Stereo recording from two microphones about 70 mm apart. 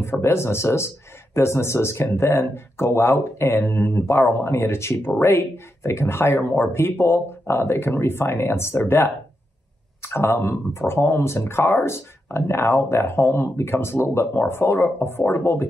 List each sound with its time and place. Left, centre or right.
0.0 s speech: left